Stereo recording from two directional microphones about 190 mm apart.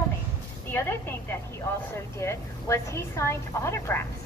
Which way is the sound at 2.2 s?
15° left (ahead or behind).